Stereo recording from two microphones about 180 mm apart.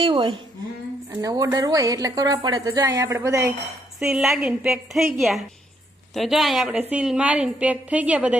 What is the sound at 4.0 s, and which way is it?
A woman's voice, 5° right (ahead or behind).